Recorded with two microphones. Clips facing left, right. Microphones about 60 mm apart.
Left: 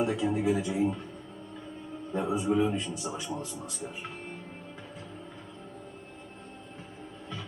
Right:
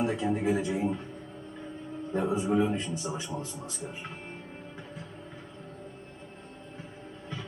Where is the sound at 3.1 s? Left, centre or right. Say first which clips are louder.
Right 2 dB; centre.